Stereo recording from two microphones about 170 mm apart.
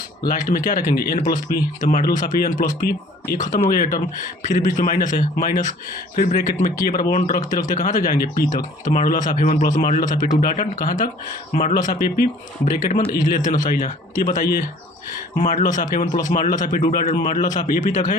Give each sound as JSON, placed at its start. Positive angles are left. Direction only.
{"t": 0.3, "sound": "speech", "side_deg": 55}
{"t": 3.3, "sound": "speech", "side_deg": 45}